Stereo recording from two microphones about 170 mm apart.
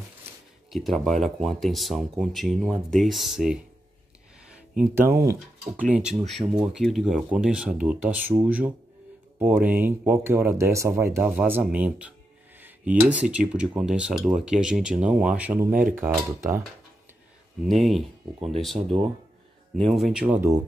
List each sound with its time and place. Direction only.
0.7 s speech: centre (ahead or behind)
4.7 s speech: 15° right (ahead or behind)
15.7 s speech: 55° right (ahead or behind)
16.0 s speech: 15° right (ahead or behind)
17.6 s speech: centre (ahead or behind)
19.9 s speech: centre (ahead or behind)